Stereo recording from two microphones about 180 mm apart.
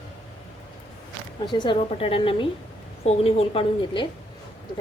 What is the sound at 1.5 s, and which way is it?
A woman's voice, 25° left (ahead or behind).